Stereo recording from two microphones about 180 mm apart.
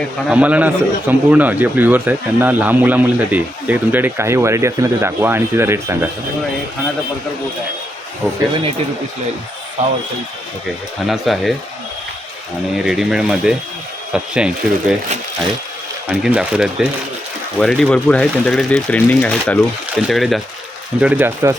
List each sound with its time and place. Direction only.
0.3 s a man's voice: 5° right (ahead or behind)
8.2 s a man's voice: 10° right (ahead or behind)
9.8 s speech: 40° right (ahead or behind)
11.1 s speech: centre (ahead or behind)
12.7 s speech: centre (ahead or behind)
16.0 s a man's voice: 5° right (ahead or behind)